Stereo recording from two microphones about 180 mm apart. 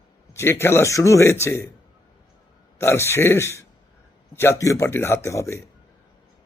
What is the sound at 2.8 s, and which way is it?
Speech, 15° left (ahead or behind).